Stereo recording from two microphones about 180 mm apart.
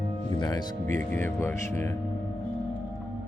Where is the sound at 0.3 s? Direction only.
20° left (ahead or behind).